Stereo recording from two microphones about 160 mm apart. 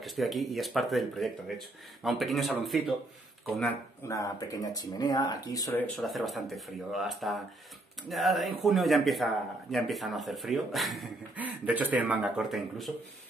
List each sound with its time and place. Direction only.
0.0 s speech: centre (ahead or behind)
4.1 s speech: 20° left (ahead or behind)
5.9 s speech: centre (ahead or behind)